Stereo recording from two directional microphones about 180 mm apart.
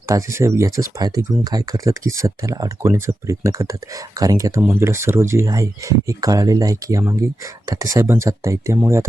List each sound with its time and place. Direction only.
0.1 s speech: 15° right (ahead or behind)